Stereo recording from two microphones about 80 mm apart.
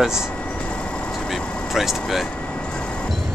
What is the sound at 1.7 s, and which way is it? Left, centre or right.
Speech, centre.